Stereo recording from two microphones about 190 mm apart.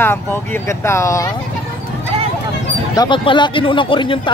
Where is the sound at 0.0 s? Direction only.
10° left (ahead or behind).